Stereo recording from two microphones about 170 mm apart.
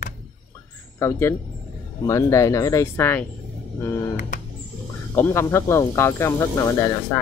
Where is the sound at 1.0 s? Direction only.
15° left (ahead or behind).